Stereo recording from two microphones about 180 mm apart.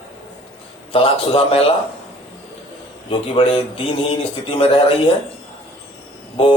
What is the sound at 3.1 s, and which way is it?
A man's voice, 30° left (ahead or behind).